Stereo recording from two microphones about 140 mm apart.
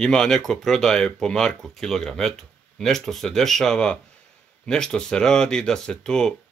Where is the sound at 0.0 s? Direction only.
5° left (ahead or behind).